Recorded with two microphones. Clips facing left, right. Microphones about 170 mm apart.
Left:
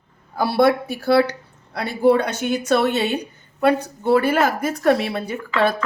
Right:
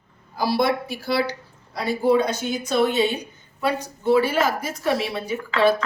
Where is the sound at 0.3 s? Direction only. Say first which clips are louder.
Left 4 dB; 60° left (ahead or behind).